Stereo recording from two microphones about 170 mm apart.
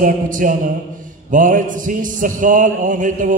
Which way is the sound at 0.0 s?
50° right (ahead or behind).